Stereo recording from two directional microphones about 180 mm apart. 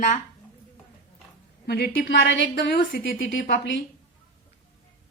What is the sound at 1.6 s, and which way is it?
A woman's voice, 65° left (ahead or behind).